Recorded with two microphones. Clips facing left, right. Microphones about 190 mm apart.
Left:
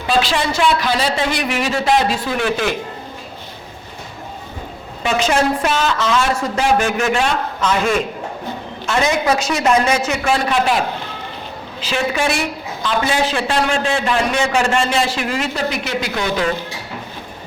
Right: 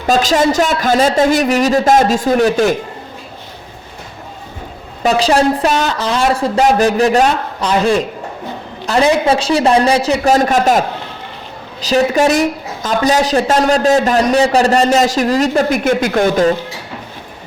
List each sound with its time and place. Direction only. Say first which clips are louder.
0.1 s speech: right 6 dB; 45° right (ahead or behind)
5.0 s a woman's voice: right 5 dB; 35° right (ahead or behind)